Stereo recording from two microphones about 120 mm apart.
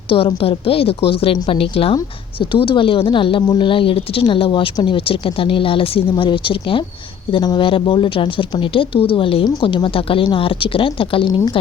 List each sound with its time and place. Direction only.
0.1 s speech: 45° left (ahead or behind)